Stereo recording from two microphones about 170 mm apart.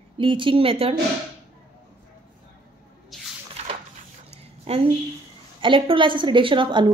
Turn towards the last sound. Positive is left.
turn(degrees=-30)  # may be behind; listen again after turning